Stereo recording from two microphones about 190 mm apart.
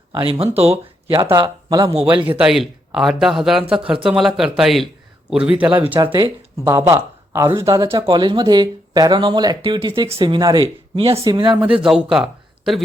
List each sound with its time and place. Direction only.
0.1 s speech: 25° right (ahead or behind)
1.2 s speech: 20° right (ahead or behind)
2.3 s a man's voice: 5° right (ahead or behind)
6.0 s speech: 25° right (ahead or behind)
11.8 s speech: 5° right (ahead or behind)